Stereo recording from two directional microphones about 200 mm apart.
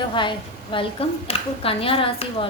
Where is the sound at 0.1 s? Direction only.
25° left (ahead or behind).